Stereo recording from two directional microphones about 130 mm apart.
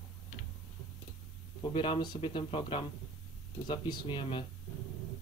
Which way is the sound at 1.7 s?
40° left (ahead or behind).